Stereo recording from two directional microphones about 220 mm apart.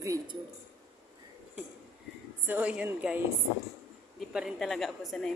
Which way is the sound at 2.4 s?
5° right (ahead or behind).